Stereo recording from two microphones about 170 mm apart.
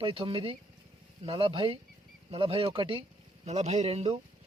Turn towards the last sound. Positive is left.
turn(degrees=-40)  # may be behind; listen again after turning